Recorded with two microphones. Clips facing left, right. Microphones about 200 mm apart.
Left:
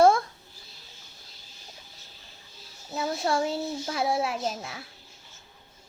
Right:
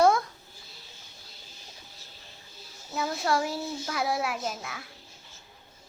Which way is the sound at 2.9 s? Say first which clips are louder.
Left 1 dB; 30° left (ahead or behind).